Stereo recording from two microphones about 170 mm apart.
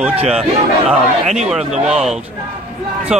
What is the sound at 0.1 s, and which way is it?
Speech, 35° right (ahead or behind).